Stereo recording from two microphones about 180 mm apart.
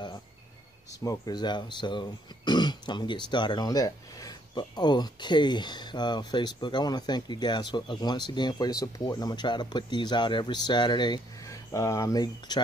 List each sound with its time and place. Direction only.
0.9 s speech: 20° left (ahead or behind)